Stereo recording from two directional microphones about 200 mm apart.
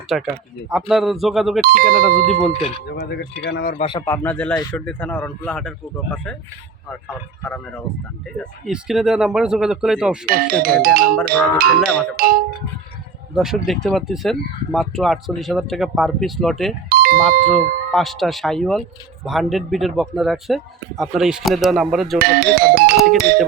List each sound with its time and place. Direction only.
0.1 s speech: centre (ahead or behind)
1.6 s speech: 45° right (ahead or behind)
2.0 s speech: centre (ahead or behind)
3.0 s a man's voice: 50° left (ahead or behind)
3.8 s speech: 25° left (ahead or behind)
4.0 s speech: 10° left (ahead or behind)
10.2 s speech: 45° right (ahead or behind)
13.3 s speech: centre (ahead or behind)
16.9 s doorbell: 45° right (ahead or behind)
17.5 s speech: centre (ahead or behind)
22.2 s music: 50° right (ahead or behind)
23.0 s speech: 50° right (ahead or behind)